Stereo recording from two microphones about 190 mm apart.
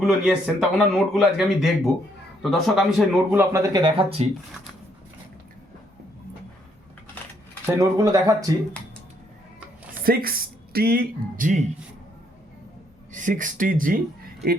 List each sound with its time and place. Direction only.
0.0 s speech: centre (ahead or behind)
3.3 s speech: 15° right (ahead or behind)
7.7 s speech: 15° right (ahead or behind)
10.0 s speech: 50° right (ahead or behind)
13.1 s speech: 45° right (ahead or behind)